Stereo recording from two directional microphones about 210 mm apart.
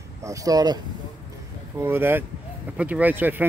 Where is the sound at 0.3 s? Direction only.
15° right (ahead or behind).